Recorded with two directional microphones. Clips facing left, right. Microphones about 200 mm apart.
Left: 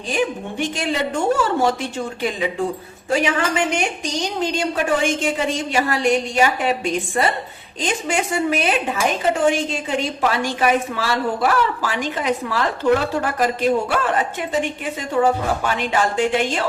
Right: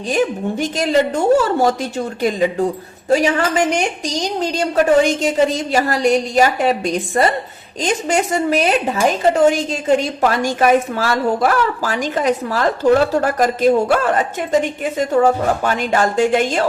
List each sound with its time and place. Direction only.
0.1 s a woman's voice: 40° right (ahead or behind)